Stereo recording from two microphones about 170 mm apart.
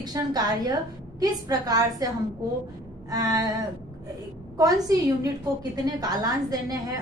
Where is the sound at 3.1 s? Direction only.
20° right (ahead or behind).